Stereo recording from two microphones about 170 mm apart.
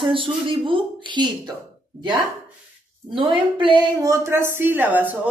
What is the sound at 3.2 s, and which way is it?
A woman's voice, 30° right (ahead or behind).